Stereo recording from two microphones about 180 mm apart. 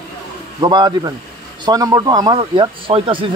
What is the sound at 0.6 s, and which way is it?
Speech, 25° right (ahead or behind).